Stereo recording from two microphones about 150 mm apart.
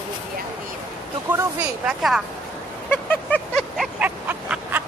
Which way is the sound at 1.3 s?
10° right (ahead or behind).